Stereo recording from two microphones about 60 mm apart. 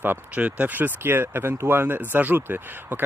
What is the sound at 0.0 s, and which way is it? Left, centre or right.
Speech, right.